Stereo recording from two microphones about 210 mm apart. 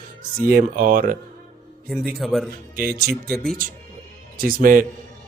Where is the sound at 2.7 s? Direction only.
45° right (ahead or behind).